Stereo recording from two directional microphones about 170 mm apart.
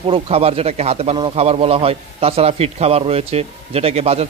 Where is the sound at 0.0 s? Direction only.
35° right (ahead or behind).